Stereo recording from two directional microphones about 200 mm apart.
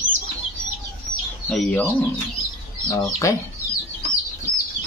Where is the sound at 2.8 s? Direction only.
15° left (ahead or behind).